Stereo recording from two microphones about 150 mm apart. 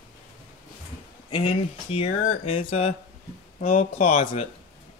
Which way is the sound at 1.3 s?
40° left (ahead or behind).